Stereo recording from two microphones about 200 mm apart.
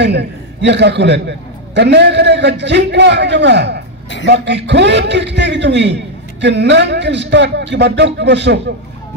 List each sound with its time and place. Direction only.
0.0 s a man's voice: 60° right (ahead or behind)